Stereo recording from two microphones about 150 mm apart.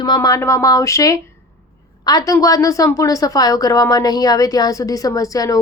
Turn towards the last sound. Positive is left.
turn(degrees=25)  # may be behind; listen again after turning